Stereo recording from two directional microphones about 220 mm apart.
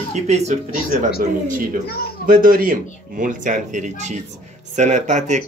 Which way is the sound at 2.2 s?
40° right (ahead or behind).